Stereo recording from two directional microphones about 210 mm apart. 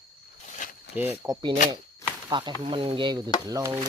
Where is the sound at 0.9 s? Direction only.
10° right (ahead or behind).